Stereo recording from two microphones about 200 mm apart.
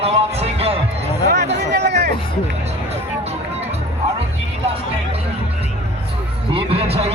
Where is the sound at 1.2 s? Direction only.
60° right (ahead or behind).